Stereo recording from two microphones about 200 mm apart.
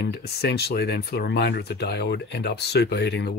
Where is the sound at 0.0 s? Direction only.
55° left (ahead or behind).